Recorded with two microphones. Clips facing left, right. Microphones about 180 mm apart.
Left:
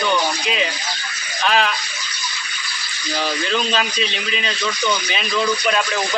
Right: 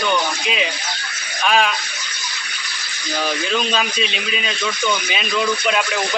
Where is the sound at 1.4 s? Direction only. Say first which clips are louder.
Right 1 dB; 10° right (ahead or behind).